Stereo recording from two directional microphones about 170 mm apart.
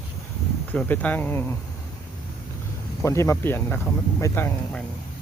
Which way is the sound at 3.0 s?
15° left (ahead or behind).